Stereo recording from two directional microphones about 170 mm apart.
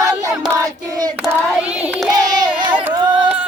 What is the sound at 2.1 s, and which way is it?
Child singing, 25° right (ahead or behind).